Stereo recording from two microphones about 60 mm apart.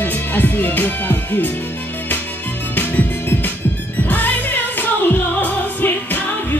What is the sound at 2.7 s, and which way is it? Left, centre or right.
Music, left.